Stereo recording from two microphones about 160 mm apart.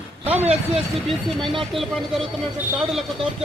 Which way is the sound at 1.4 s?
Centre (ahead or behind).